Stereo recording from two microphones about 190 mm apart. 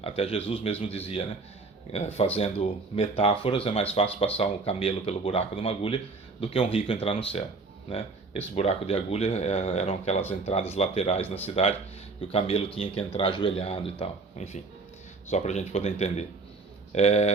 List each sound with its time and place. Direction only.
0.0 s speech: 30° left (ahead or behind)